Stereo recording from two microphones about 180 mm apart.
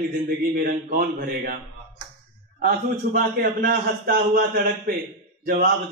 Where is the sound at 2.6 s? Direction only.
60° right (ahead or behind).